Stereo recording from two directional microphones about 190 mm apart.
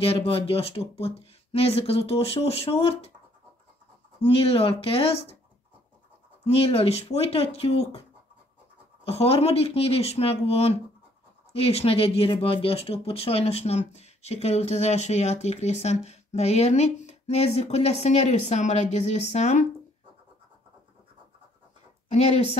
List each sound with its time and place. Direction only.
0.0 s speech: 30° left (ahead or behind)
4.2 s speech: 30° left (ahead or behind)
6.4 s speech: 30° left (ahead or behind)
9.0 s speech: 30° left (ahead or behind)
22.1 s speech: 35° left (ahead or behind)